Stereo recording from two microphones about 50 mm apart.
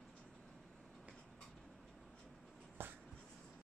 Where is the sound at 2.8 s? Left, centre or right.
Right.